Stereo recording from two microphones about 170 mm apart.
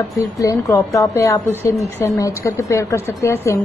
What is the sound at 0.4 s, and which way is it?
A woman's voice, 20° left (ahead or behind).